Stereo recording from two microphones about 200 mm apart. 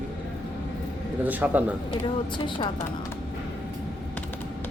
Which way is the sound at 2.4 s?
25° left (ahead or behind).